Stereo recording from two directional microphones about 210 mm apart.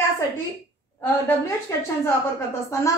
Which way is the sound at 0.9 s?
15° left (ahead or behind).